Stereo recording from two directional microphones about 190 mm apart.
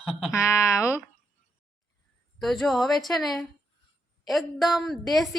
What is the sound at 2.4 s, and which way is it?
A woman's voice, centre (ahead or behind).